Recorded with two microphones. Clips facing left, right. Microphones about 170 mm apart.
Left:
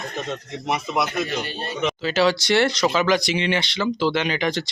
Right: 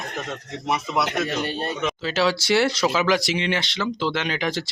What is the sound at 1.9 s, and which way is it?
Speech, centre (ahead or behind).